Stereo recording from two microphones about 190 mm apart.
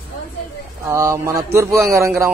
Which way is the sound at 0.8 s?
15° right (ahead or behind).